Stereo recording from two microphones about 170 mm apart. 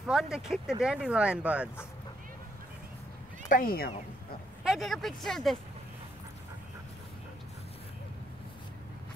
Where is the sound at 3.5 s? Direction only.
60° left (ahead or behind).